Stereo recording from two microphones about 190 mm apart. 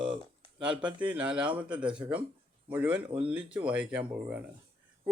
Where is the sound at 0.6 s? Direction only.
5° right (ahead or behind).